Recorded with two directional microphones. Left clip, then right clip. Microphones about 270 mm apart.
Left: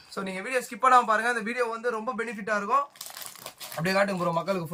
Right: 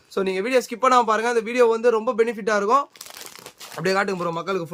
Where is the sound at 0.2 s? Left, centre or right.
Right.